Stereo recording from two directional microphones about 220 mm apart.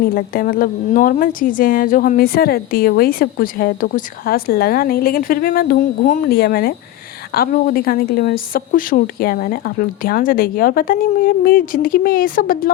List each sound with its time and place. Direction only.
0.1 s a woman's voice: 40° left (ahead or behind)